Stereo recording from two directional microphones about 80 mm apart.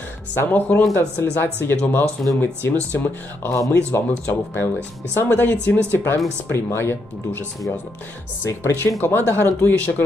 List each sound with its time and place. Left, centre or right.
0.4 s speech: left
3.4 s speech: left
8.5 s speech: left
9.0 s speech: left